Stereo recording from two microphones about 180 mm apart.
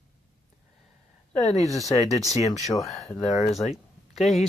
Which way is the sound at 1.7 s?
20° left (ahead or behind).